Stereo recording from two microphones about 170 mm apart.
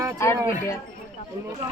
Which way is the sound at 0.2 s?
15° left (ahead or behind).